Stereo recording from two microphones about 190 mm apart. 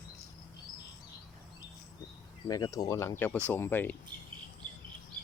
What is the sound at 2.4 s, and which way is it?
Speech, 20° left (ahead or behind).